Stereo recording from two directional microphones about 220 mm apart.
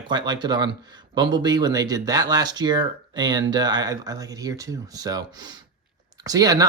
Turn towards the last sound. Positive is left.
turn(degrees=-15)  # may be behind; listen again after turning